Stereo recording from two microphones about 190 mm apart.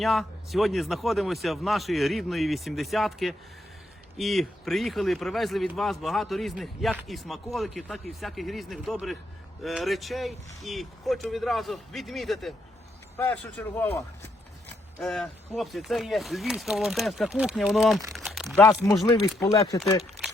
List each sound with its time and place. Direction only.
0.0 s speech: centre (ahead or behind)
13.1 s a man's voice: 10° left (ahead or behind)
18.5 s a man's voice: 15° left (ahead or behind)